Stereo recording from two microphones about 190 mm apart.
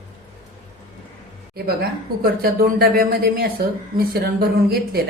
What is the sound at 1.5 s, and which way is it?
Speech, 55° right (ahead or behind).